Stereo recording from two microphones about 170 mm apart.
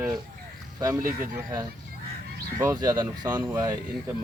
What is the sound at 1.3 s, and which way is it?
Speech, 25° right (ahead or behind).